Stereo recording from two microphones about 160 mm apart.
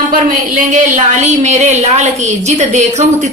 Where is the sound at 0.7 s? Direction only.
50° right (ahead or behind).